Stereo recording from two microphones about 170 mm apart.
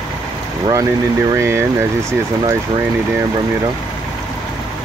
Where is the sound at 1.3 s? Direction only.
15° right (ahead or behind).